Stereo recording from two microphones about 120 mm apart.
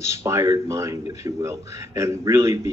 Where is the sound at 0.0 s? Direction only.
25° right (ahead or behind).